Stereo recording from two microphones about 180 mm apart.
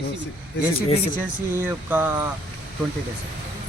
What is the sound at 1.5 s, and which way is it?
Speech, 10° right (ahead or behind).